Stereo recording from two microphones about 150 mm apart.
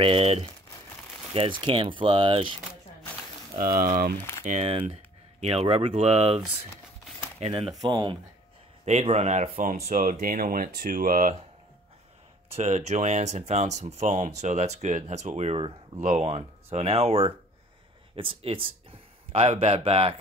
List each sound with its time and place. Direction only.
0.0 s speech: 40° right (ahead or behind)
3.5 s speech: 70° right (ahead or behind)
4.5 s speech: 45° right (ahead or behind)
7.7 s speech: 25° right (ahead or behind)
9.0 s speech: 45° right (ahead or behind); by 11.3 s 65° right (ahead or behind)
12.5 s speech: 45° right (ahead or behind)